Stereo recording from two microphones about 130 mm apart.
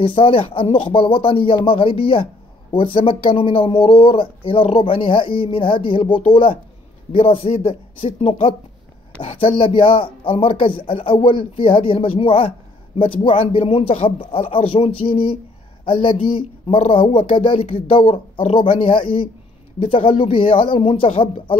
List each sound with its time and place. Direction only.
0.0 s speech: 45° left (ahead or behind)